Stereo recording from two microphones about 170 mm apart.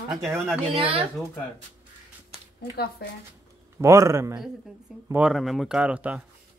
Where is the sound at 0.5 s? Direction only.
Centre (ahead or behind).